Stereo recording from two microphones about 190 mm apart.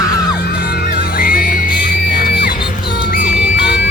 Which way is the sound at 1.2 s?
45° left (ahead or behind).